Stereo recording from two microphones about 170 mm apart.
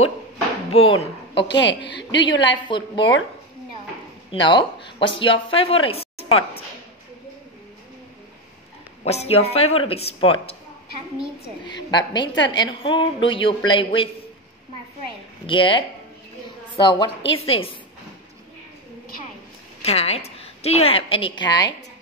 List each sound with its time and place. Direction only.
0.7 s speech: 35° left (ahead or behind)
1.5 s a woman's voice: 90° left
2.6 s a woman's voice: 25° left (ahead or behind)
4.3 s a woman's voice: 30° left (ahead or behind)
9.0 s speech: 40° left (ahead or behind)
11.6 s a woman's voice: 25° left (ahead or behind)
15.4 s a woman's voice: 30° left (ahead or behind)
19.8 s a woman's voice: 35° left (ahead or behind)